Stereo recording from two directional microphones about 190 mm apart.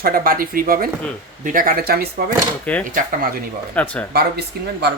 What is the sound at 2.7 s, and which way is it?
Speech, 5° left (ahead or behind).